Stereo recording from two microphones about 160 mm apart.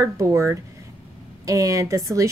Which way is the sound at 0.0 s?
20° right (ahead or behind).